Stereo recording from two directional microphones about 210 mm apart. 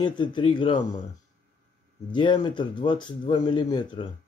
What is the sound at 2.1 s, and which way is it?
Speech, 20° left (ahead or behind).